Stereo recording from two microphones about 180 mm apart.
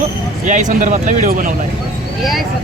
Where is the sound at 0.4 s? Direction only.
45° right (ahead or behind).